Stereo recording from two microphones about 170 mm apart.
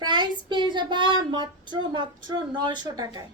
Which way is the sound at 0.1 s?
25° right (ahead or behind).